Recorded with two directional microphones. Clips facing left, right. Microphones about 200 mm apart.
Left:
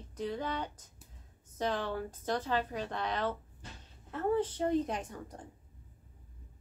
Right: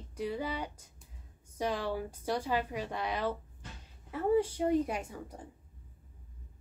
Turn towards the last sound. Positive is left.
turn(degrees=-5)  # may be behind; listen again after turning